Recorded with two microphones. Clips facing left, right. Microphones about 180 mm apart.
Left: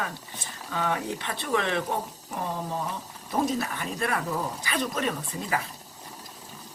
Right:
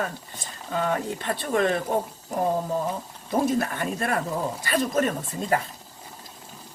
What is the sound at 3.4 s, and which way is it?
A woman's voice, 50° right (ahead or behind).